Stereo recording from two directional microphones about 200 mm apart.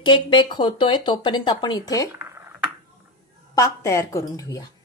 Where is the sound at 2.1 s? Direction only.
10° right (ahead or behind).